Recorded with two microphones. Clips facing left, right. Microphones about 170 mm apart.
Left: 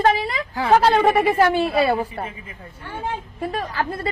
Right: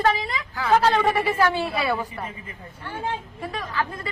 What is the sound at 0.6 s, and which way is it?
Speech, 25° left (ahead or behind).